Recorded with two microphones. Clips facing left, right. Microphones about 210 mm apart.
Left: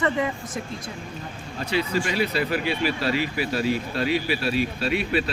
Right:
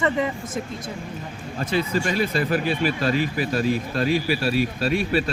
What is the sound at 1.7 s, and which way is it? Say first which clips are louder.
Speech: right 1 dB; 45° right (ahead or behind).